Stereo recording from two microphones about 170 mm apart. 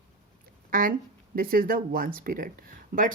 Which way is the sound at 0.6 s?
55° right (ahead or behind).